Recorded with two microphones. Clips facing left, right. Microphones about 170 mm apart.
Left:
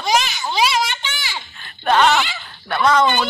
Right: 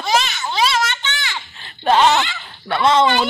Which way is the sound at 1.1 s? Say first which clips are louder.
Right 2 dB; 25° right (ahead or behind).